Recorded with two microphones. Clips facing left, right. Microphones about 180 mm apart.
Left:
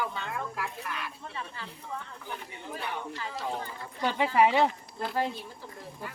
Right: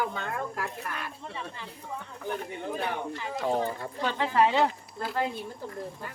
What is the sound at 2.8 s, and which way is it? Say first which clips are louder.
Speech: right 2 dB; 50° right (ahead or behind).